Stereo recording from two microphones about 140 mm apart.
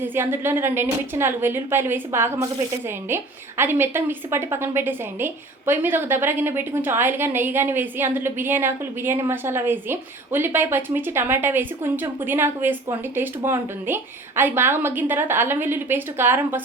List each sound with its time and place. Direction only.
0.0 s a woman's voice: 15° right (ahead or behind)
3.6 s a woman's voice: 15° right (ahead or behind)